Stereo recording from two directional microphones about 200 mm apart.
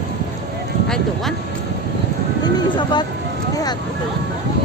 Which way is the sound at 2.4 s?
20° left (ahead or behind).